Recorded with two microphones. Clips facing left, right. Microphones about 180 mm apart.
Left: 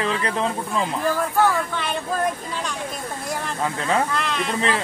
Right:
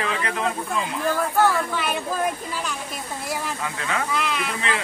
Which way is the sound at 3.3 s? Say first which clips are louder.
Left 3 dB; 5° right (ahead or behind).